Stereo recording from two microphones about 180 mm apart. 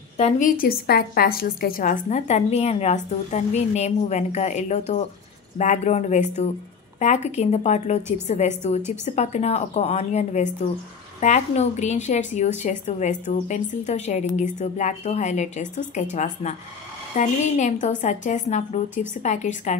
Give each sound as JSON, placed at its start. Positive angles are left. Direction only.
{"t": 0.2, "sound": "a woman's voice", "side_deg": 50}